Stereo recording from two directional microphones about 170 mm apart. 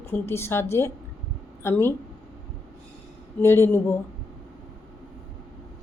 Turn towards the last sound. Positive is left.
turn(degrees=15)  # may be behind; listen again after turning